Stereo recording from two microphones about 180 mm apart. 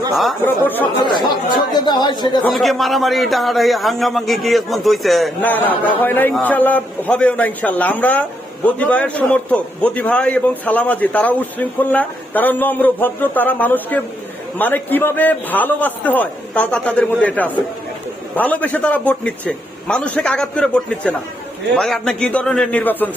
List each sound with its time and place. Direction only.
0.1 s speech: centre (ahead or behind)
0.4 s a man's voice: 10° left (ahead or behind)
1.7 s speech: 25° left (ahead or behind)
2.4 s a man's voice: centre (ahead or behind)